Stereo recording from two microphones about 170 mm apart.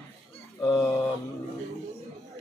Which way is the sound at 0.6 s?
20° left (ahead or behind).